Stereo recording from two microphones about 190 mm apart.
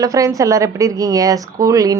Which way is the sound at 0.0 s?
15° right (ahead or behind).